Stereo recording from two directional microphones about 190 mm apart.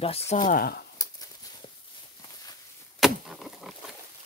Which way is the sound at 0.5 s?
55° left (ahead or behind).